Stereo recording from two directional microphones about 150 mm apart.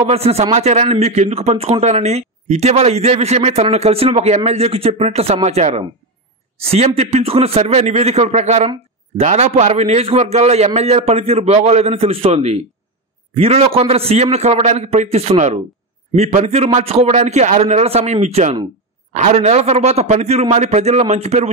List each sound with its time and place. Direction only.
0.0 s a man's voice: 40° right (ahead or behind)